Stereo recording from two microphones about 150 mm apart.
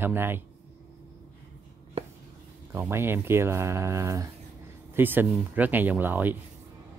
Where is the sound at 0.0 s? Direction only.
15° right (ahead or behind).